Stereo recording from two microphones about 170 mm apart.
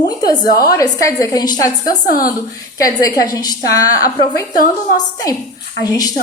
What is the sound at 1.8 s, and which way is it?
Speech, 55° left (ahead or behind).